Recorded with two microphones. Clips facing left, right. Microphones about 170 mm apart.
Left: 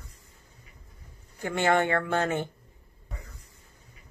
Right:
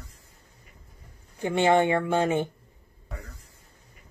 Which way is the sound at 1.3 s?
15° right (ahead or behind).